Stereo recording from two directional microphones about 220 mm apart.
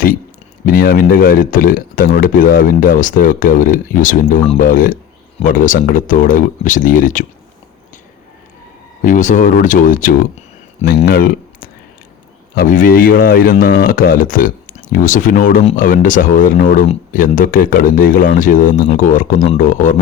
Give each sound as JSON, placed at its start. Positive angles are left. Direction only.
{"t": 0.6, "sound": "speech", "side_deg": 40}
{"t": 9.0, "sound": "speech", "side_deg": 35}